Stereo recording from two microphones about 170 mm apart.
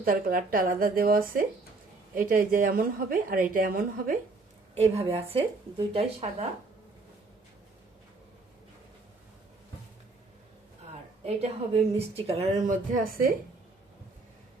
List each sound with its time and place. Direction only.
0.0 s a woman's voice: 55° right (ahead or behind)
4.7 s speech: 35° right (ahead or behind)
11.3 s speech: 40° right (ahead or behind); by 13.3 s 60° right (ahead or behind)